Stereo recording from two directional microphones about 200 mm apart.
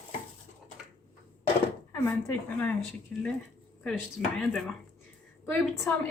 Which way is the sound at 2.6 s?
5° left (ahead or behind).